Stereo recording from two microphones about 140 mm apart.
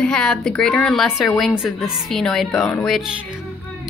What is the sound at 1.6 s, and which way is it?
A woman's voice, 5° right (ahead or behind).